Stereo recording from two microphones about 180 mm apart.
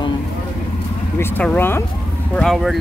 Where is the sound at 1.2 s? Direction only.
10° left (ahead or behind).